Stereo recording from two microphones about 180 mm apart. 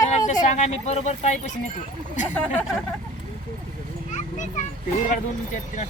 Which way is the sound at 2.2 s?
10° left (ahead or behind).